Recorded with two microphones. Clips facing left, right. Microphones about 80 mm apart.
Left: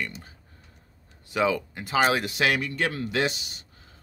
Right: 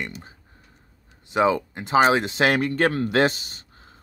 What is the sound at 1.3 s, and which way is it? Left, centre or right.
Speech, right.